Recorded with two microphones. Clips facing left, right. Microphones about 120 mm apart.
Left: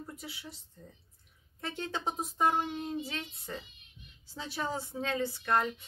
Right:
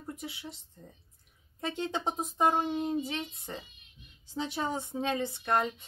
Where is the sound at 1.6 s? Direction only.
20° right (ahead or behind).